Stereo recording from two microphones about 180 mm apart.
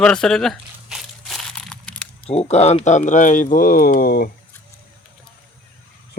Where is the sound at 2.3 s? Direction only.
35° left (ahead or behind); by 4.2 s 55° left (ahead or behind).